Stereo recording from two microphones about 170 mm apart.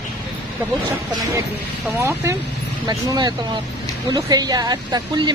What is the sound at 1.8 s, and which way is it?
Speech, 15° right (ahead or behind).